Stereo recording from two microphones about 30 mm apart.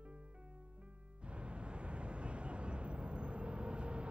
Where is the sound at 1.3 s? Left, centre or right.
Right.